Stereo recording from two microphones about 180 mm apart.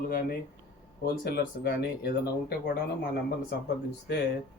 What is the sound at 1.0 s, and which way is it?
Speech, 60° left (ahead or behind).